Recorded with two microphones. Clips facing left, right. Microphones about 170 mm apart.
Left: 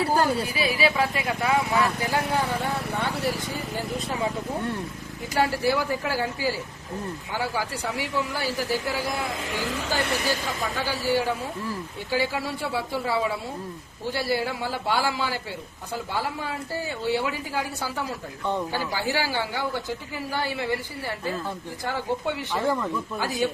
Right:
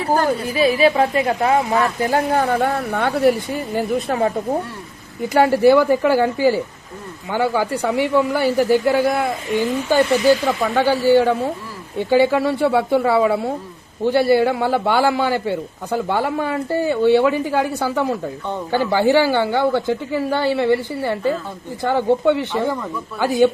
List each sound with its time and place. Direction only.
0.5 s speech: 45° right (ahead or behind); by 4.3 s 70° right (ahead or behind)
5.3 s a man's voice: 60° right (ahead or behind)